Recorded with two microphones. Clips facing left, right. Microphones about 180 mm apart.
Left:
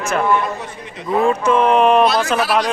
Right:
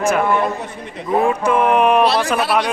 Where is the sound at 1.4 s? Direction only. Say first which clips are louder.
Left 1 dB; 10° right (ahead or behind).